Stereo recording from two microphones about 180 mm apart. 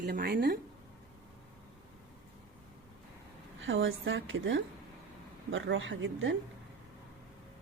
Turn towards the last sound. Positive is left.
turn(degrees=-90)